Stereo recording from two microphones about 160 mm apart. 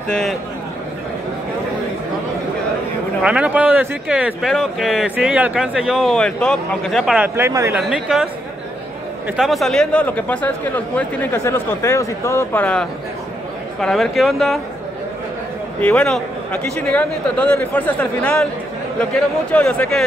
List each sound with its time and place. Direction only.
0.1 s speech: centre (ahead or behind)
3.2 s speech: 5° right (ahead or behind)
7.3 s speech: 15° right (ahead or behind)
7.9 s speech: 5° right (ahead or behind)
9.4 s speech: centre (ahead or behind)
15.8 s speech: 5° left (ahead or behind)